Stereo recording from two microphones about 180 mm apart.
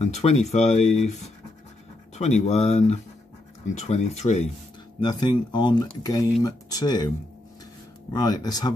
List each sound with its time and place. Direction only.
0.0 s speech: 40° left (ahead or behind)
2.1 s speech: 40° left (ahead or behind)
5.0 s speech: 25° left (ahead or behind)
8.1 s speech: 20° left (ahead or behind)